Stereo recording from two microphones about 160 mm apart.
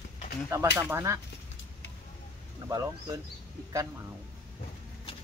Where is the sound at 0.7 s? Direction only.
15° right (ahead or behind).